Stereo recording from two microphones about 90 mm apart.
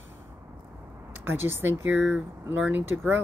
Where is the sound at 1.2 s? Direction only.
25° right (ahead or behind).